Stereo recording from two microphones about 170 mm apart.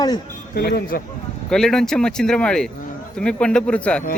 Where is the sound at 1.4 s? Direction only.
5° left (ahead or behind).